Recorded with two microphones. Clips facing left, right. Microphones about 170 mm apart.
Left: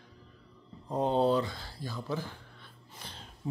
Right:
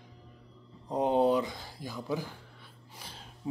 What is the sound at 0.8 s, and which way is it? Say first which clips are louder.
Speech: right 1 dB; 15° right (ahead or behind).